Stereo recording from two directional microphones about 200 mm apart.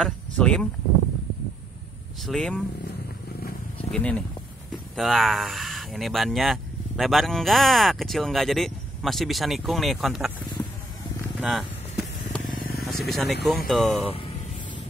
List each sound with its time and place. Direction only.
0.0 s speech: 5° left (ahead or behind)
2.2 s speech: centre (ahead or behind)
3.7 s wild animals: 5° left (ahead or behind)
4.9 s speech: centre (ahead or behind)
11.1 s a sound: 5° right (ahead or behind)
12.4 s vehicle: 45° left (ahead or behind)
12.8 s speech: centre (ahead or behind)
14.0 s speech: 30° left (ahead or behind)